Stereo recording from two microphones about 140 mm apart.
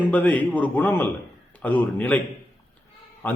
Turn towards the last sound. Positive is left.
turn(degrees=15)  # may be behind; listen again after turning